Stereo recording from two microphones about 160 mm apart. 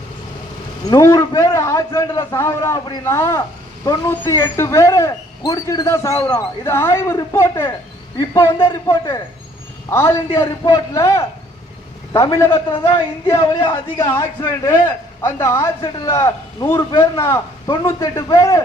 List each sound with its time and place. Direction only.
0.9 s speech: 20° left (ahead or behind)
12.7 s speech: 30° left (ahead or behind)
13.2 s speech: 20° left (ahead or behind)